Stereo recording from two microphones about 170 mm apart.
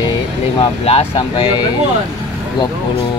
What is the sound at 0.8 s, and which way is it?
Speech, 35° left (ahead or behind).